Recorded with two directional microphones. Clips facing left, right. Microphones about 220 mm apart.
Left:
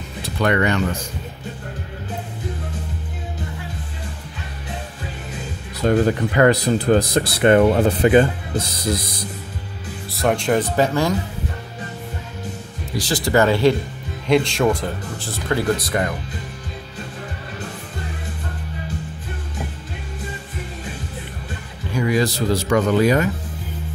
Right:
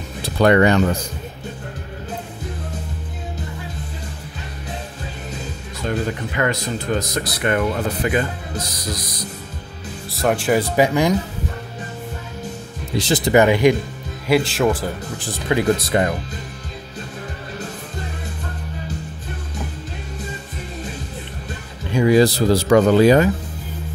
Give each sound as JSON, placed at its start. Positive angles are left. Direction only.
{"t": 0.4, "sound": "speech", "side_deg": -35}
{"t": 5.8, "sound": "speech", "side_deg": 40}
{"t": 10.1, "sound": "speech", "side_deg": -5}
{"t": 12.9, "sound": "speech", "side_deg": -20}
{"t": 14.2, "sound": "speech", "side_deg": -5}
{"t": 15.1, "sound": "speech", "side_deg": -15}
{"t": 21.9, "sound": "speech", "side_deg": -30}